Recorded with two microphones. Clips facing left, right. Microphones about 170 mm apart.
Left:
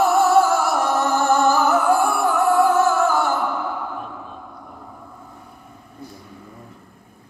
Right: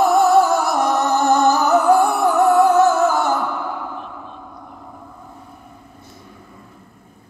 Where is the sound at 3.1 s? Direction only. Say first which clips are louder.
Right 1 dB; 20° right (ahead or behind).